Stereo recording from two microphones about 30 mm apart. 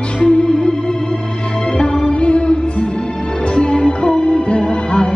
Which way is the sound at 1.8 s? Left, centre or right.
Left.